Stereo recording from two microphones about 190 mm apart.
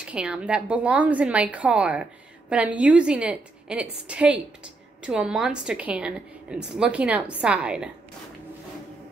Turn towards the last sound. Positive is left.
turn(degrees=-5)  # may be behind; listen again after turning